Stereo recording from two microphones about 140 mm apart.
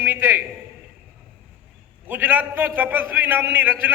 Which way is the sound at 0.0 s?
15° right (ahead or behind).